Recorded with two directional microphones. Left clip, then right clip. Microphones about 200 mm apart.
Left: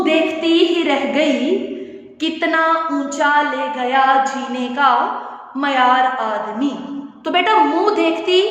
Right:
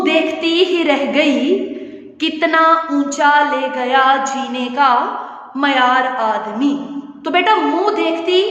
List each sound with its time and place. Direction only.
0.0 s a woman's voice: 25° right (ahead or behind)
2.2 s female singing: 25° right (ahead or behind)
7.3 s a woman's voice: 10° right (ahead or behind); by 8.4 s 5° left (ahead or behind)